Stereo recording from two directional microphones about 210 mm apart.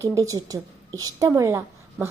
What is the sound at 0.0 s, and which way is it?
A woman's voice, 15° right (ahead or behind).